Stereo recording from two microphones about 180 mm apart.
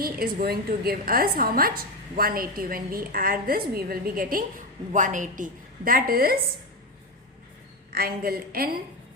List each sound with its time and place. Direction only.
0.0 s a woman's voice: 55° right (ahead or behind)
7.9 s a woman's voice: 55° right (ahead or behind)